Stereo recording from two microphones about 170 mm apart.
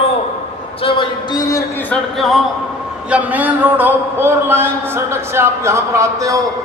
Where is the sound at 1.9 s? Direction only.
Centre (ahead or behind); by 6.4 s 20° right (ahead or behind).